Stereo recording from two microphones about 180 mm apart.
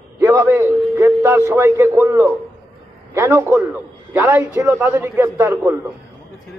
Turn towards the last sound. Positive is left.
turn(degrees=-10)  # may be behind; listen again after turning